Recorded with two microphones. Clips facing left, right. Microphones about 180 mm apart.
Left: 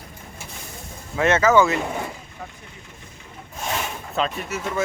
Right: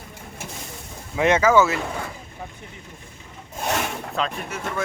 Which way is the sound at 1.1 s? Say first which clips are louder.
Even; 10° right (ahead or behind).